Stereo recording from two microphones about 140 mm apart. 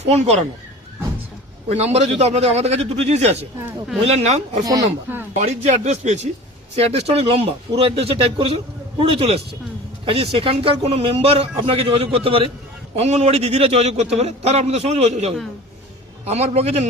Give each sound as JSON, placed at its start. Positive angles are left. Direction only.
{"t": 0.0, "sound": "speech", "side_deg": -50}
{"t": 1.7, "sound": "speech", "side_deg": -50}
{"t": 4.5, "sound": "speech", "side_deg": -25}
{"t": 5.3, "sound": "speech", "side_deg": -55}